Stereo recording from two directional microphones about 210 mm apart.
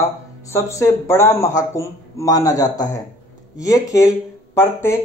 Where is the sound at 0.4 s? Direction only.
15° left (ahead or behind).